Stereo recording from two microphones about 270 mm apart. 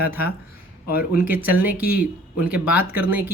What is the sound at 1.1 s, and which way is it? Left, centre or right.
Speech, centre.